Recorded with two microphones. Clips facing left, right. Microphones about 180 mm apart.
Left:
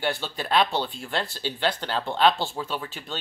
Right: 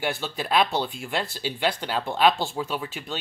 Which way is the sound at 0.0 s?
10° right (ahead or behind).